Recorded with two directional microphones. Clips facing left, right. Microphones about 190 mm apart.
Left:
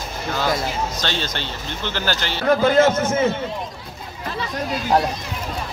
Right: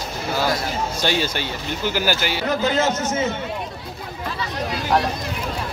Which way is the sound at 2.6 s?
55° left (ahead or behind).